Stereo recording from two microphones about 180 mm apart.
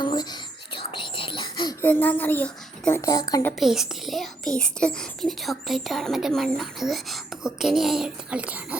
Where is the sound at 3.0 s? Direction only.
20° left (ahead or behind).